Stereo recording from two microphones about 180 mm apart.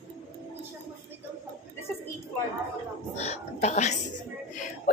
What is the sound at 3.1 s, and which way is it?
Cat, 35° left (ahead or behind).